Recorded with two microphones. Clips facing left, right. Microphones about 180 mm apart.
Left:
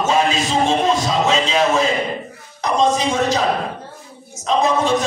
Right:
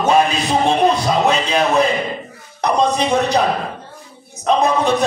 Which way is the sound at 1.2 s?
60° right (ahead or behind).